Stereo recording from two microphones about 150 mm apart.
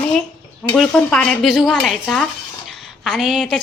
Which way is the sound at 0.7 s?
5° left (ahead or behind).